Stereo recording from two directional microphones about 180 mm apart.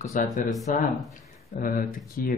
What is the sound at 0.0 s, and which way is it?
Speech, 50° left (ahead or behind).